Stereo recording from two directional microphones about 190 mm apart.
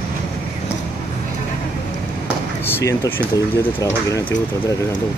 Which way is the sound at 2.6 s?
15° left (ahead or behind).